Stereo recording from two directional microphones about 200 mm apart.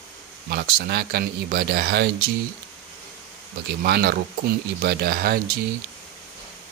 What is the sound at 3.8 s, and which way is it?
Speech, 50° right (ahead or behind).